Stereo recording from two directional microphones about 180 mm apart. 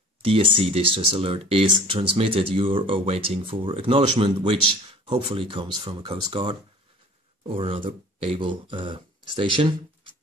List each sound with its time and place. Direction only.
0.2 s speech: 30° right (ahead or behind)